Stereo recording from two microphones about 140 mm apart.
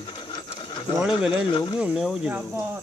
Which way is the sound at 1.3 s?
35° left (ahead or behind).